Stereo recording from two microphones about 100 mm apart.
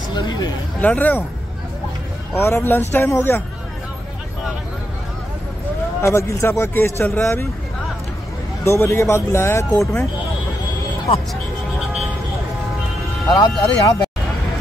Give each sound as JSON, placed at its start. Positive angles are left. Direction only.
{"t": 0.1, "sound": "speech", "side_deg": 45}
{"t": 0.7, "sound": "speech", "side_deg": 15}
{"t": 2.3, "sound": "speech", "side_deg": 25}
{"t": 6.0, "sound": "speech", "side_deg": 30}
{"t": 8.6, "sound": "speech", "side_deg": 25}
{"t": 13.3, "sound": "speech", "side_deg": 35}